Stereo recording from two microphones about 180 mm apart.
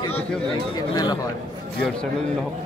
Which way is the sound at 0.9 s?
20° left (ahead or behind).